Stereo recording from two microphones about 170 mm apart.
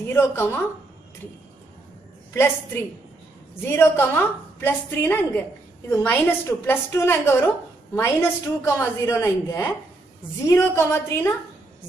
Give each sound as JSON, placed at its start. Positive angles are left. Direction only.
{"t": 0.1, "sound": "a woman's voice", "side_deg": 15}
{"t": 2.3, "sound": "a woman's voice", "side_deg": 15}